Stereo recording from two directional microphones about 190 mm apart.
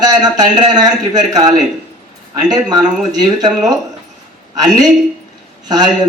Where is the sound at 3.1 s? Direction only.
20° right (ahead or behind).